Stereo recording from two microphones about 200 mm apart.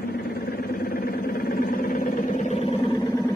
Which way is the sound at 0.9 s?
45° left (ahead or behind).